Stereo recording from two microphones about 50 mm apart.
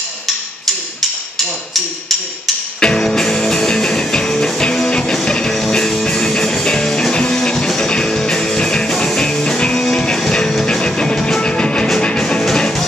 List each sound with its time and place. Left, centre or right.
2.8 s music: centre